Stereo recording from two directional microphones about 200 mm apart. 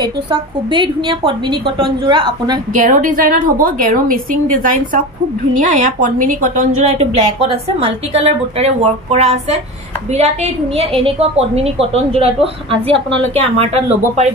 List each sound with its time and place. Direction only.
0.0 s a woman's voice: 25° right (ahead or behind)
2.7 s a woman's voice: 40° right (ahead or behind)
7.0 s a woman's voice: 30° right (ahead or behind)